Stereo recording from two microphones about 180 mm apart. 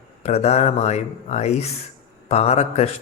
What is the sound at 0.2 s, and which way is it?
Speech, 40° left (ahead or behind).